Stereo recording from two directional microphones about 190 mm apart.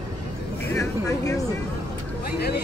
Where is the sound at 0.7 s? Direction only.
15° left (ahead or behind).